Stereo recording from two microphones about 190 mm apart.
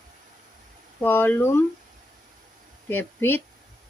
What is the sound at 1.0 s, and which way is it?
Speech, 10° left (ahead or behind).